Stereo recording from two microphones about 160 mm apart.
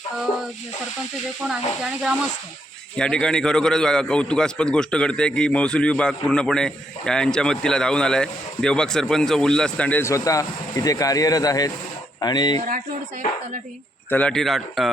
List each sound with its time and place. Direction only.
1.5 s a man's voice: 5° right (ahead or behind); by 12.5 s 25° left (ahead or behind)
12.5 s speech: 60° right (ahead or behind)
14.1 s a man's voice: 10° left (ahead or behind)